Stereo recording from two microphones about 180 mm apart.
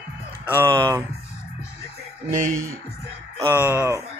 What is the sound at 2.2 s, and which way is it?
Speech, 45° right (ahead or behind).